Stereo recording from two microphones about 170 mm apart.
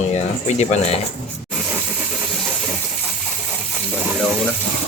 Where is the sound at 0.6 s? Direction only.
40° left (ahead or behind).